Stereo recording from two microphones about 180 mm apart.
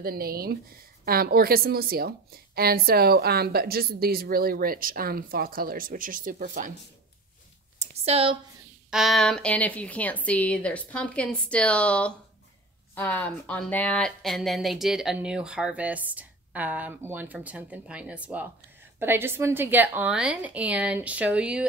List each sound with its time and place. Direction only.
0.0 s a woman's voice: 55° right (ahead or behind)
7.8 s speech: 35° right (ahead or behind)
8.9 s a woman's voice: centre (ahead or behind)